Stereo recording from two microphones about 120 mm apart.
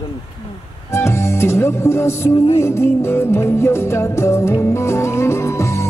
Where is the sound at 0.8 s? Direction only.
20° left (ahead or behind).